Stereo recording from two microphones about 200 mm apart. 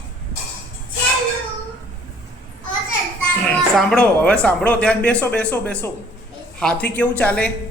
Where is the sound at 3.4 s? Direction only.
5° left (ahead or behind).